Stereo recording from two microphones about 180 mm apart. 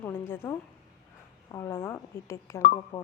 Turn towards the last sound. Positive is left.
turn(degrees=30)  # may be behind; listen again after turning